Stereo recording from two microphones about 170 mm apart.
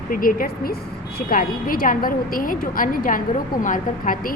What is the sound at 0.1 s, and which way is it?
A woman's voice, 55° left (ahead or behind).